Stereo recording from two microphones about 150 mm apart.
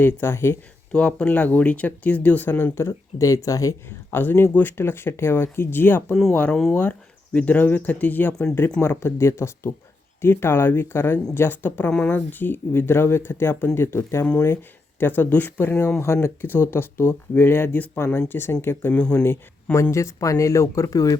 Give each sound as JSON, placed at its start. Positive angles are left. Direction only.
{"t": 0.0, "sound": "speech", "side_deg": 15}